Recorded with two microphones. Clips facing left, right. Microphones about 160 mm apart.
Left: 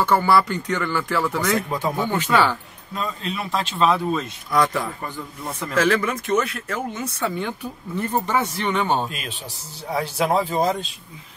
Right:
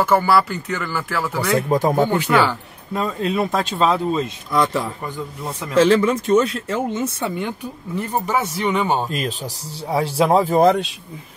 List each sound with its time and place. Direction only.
0.0 s speech: 5° right (ahead or behind)
1.7 s speech: 45° right (ahead or behind)
2.1 s a man's voice: 15° right (ahead or behind)
2.9 s speech: 50° right (ahead or behind)
3.8 s a man's voice: 25° right (ahead or behind); by 9.0 s 10° right (ahead or behind)
9.1 s speech: 40° right (ahead or behind)
10.4 s speech: 55° right (ahead or behind)